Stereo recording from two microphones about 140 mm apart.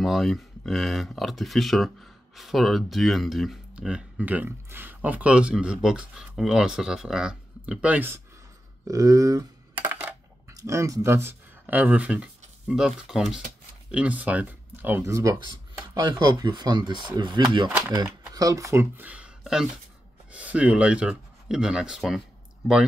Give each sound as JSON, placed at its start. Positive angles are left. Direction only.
{"t": 0.0, "sound": "speech", "side_deg": 0}
{"t": 8.8, "sound": "speech", "side_deg": -25}
{"t": 9.8, "sound": "coin", "side_deg": -15}
{"t": 10.5, "sound": "speech", "side_deg": -20}
{"t": 15.3, "sound": "speech", "side_deg": -30}
{"t": 17.6, "sound": "speech", "side_deg": -15}
{"t": 18.3, "sound": "speech", "side_deg": -25}